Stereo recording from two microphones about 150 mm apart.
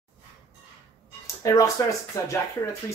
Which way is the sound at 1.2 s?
20° left (ahead or behind).